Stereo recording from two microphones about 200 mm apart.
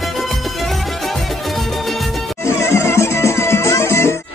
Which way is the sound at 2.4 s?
15° left (ahead or behind).